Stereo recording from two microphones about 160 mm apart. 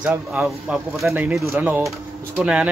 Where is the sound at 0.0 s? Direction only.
10° right (ahead or behind).